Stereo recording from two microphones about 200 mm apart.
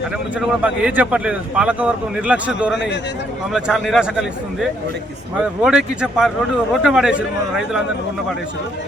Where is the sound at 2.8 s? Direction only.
60° left (ahead or behind).